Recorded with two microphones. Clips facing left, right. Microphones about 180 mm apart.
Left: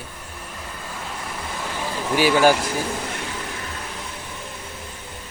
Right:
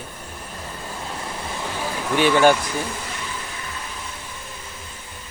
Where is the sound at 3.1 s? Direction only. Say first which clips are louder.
Left 2 dB; 60° left (ahead or behind).